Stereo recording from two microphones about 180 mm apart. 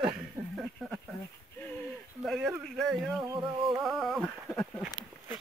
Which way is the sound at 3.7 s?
Centre (ahead or behind).